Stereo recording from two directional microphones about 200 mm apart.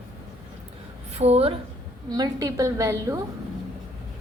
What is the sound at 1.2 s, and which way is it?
Speech, 30° right (ahead or behind).